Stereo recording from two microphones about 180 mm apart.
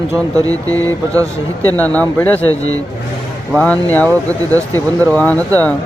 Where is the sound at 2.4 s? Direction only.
90° left.